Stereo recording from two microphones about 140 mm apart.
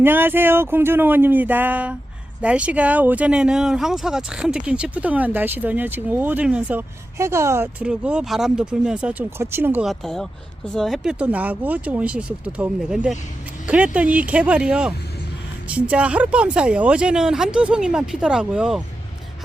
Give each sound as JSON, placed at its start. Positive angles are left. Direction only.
{"t": 0.0, "sound": "speech", "side_deg": -15}
{"t": 9.8, "sound": "speech", "side_deg": 0}